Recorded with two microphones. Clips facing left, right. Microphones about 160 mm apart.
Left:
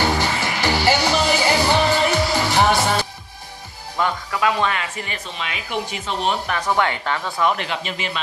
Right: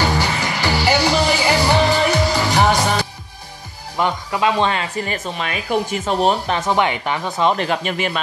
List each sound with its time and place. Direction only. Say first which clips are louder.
0.4 s music: right 1 dB; 15° right (ahead or behind)
3.9 s speech: right 2 dB; 20° right (ahead or behind)
5.0 s speech: right 6 dB; 45° right (ahead or behind)
6.5 s speech: right 3 dB; 20° right (ahead or behind)
7.5 s speech: right 6 dB; 45° right (ahead or behind)